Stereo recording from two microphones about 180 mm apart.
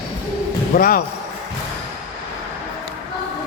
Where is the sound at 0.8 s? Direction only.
50° left (ahead or behind).